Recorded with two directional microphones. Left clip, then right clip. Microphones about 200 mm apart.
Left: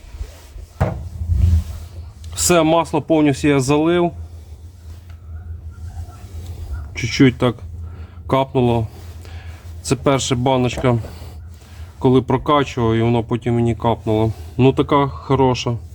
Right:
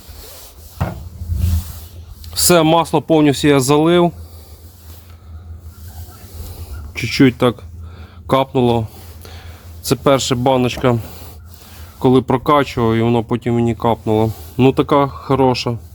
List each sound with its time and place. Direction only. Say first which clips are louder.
2.3 s speech: right 2 dB; 25° right (ahead or behind)
6.9 s speech: right 2 dB; 25° right (ahead or behind)
7.9 s a sound: right 2 dB; 25° right (ahead or behind)
11.9 s speech: right 2 dB; 30° right (ahead or behind)